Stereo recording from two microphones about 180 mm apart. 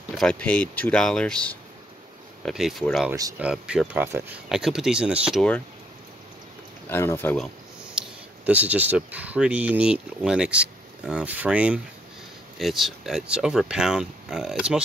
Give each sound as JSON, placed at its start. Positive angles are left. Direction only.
{"t": 0.2, "sound": "speech", "side_deg": 5}
{"t": 3.1, "sound": "speech", "side_deg": -20}
{"t": 3.3, "sound": "speech", "side_deg": -5}
{"t": 6.9, "sound": "speech", "side_deg": 15}
{"t": 8.0, "sound": "a sound", "side_deg": -5}
{"t": 8.5, "sound": "speech", "side_deg": -10}